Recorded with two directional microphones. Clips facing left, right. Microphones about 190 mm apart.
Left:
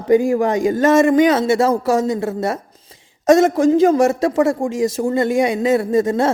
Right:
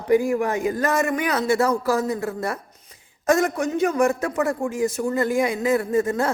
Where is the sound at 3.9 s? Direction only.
90° left.